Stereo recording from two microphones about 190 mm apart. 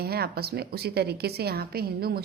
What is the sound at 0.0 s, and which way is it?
A woman's voice, 55° right (ahead or behind).